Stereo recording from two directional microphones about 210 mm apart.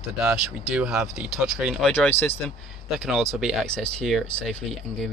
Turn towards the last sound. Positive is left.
turn(degrees=0)  # may be behind; listen again after turning